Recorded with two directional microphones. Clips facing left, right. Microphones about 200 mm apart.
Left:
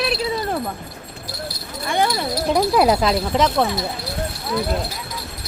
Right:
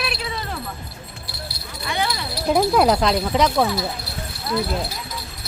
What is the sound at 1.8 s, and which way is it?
Speech, 50° left (ahead or behind).